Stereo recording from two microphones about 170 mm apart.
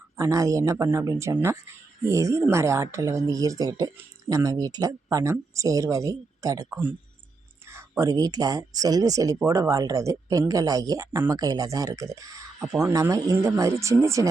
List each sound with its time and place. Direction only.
0.2 s speech: 20° right (ahead or behind)